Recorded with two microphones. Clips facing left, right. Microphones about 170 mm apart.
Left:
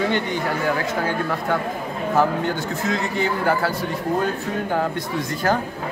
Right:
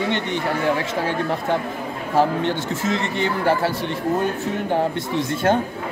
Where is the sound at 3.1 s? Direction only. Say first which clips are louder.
Right 1 dB; 25° right (ahead or behind).